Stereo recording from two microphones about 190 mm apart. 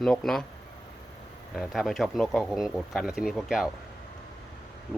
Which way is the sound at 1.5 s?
Centre (ahead or behind).